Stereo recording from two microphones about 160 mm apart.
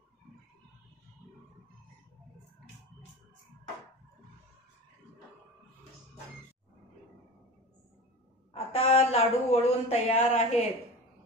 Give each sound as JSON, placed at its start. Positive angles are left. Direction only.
{"t": 8.5, "sound": "a woman's voice", "side_deg": 40}